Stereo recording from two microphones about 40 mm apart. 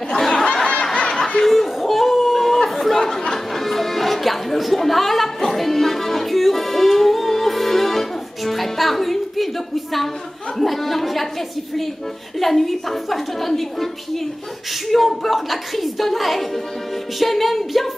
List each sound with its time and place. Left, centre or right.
0.1 s snicker: centre
1.4 s a sound: centre
12.4 s a woman's voice: centre